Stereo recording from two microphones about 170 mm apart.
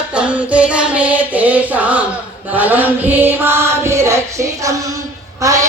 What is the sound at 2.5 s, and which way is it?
Chant, 10° right (ahead or behind).